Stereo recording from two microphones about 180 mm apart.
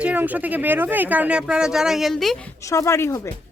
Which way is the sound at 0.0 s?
10° right (ahead or behind).